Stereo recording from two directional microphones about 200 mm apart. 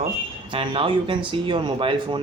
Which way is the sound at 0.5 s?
25° right (ahead or behind).